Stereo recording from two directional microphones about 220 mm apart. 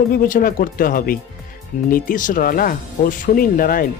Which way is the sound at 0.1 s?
40° left (ahead or behind).